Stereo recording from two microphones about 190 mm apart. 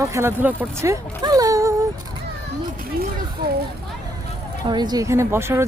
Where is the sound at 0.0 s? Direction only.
15° right (ahead or behind).